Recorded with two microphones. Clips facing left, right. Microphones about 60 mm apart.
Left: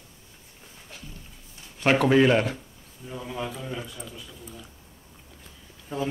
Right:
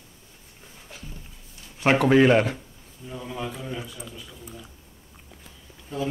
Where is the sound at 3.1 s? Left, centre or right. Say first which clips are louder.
Even; centre.